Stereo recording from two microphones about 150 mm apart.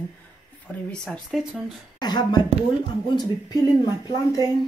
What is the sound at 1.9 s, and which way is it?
Speech, 30° left (ahead or behind).